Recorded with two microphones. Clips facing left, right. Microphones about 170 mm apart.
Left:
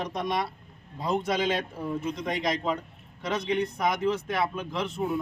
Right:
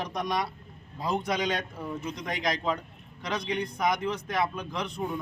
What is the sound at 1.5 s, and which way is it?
Speech, 30° left (ahead or behind).